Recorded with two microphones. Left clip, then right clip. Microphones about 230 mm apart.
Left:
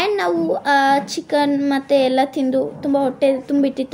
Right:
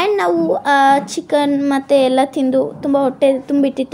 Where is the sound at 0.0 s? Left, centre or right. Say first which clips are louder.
Right 3 dB; centre.